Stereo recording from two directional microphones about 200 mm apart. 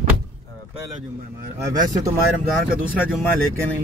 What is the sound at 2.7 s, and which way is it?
Speech, 5° right (ahead or behind).